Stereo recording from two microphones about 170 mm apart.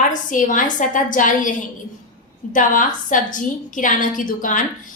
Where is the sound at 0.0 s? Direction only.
50° left (ahead or behind).